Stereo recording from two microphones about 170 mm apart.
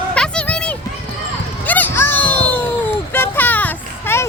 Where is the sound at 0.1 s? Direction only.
5° left (ahead or behind).